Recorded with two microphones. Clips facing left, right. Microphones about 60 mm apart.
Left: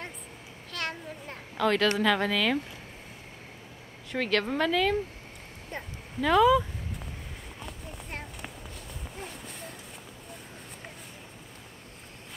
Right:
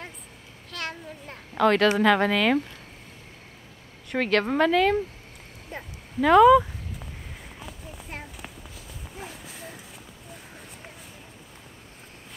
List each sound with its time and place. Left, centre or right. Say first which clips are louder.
0.7 s a child's voice: even; centre
4.1 s speech: right 4 dB; centre
5.7 s speech: right 4 dB; centre
7.6 s walk: even; centre